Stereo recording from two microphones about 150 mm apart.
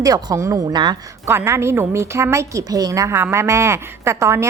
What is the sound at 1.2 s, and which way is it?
A woman's voice, 15° right (ahead or behind).